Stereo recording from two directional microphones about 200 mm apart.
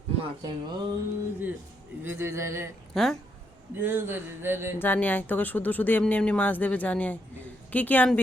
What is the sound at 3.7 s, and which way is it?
Speech, 10° right (ahead or behind).